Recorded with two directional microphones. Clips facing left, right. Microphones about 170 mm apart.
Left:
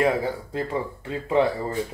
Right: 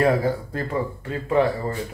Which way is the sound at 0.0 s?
15° left (ahead or behind).